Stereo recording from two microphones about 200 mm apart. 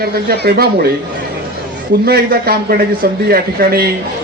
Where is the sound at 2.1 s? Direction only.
50° right (ahead or behind).